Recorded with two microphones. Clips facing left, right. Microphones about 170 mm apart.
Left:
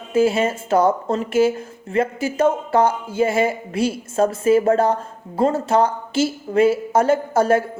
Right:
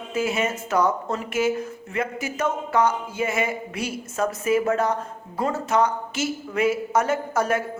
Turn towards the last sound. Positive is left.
turn(degrees=30)  # may be behind; listen again after turning